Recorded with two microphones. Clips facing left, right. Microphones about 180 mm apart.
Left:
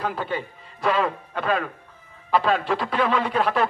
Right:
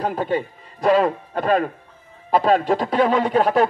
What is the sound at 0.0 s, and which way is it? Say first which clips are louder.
A man's voice: right 5 dB; 40° right (ahead or behind).